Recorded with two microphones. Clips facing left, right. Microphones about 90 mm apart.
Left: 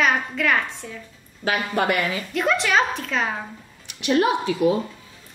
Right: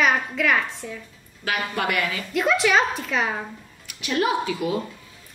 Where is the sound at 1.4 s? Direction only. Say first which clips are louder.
Left 3 dB; 30° left (ahead or behind).